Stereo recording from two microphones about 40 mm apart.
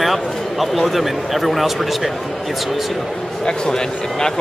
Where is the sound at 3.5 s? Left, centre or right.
Centre.